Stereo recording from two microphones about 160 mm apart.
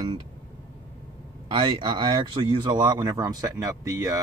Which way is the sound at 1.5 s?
30° right (ahead or behind).